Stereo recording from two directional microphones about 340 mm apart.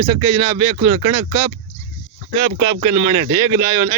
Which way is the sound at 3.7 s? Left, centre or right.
Centre.